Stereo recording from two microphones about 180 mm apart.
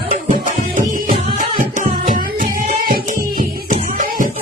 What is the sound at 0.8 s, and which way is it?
Music, 45° right (ahead or behind).